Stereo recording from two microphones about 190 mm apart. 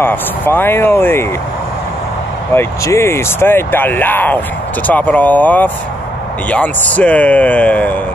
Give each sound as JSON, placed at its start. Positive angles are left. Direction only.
{"t": 0.0, "sound": "speech", "side_deg": 10}
{"t": 2.5, "sound": "speech", "side_deg": 15}